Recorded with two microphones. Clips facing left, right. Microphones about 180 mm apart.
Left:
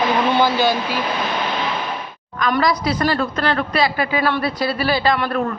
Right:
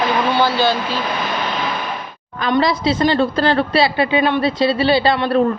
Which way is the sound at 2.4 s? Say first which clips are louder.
Right 2 dB; 25° right (ahead or behind).